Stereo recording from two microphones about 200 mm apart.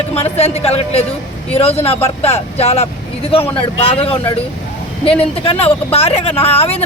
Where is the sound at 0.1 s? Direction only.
30° left (ahead or behind).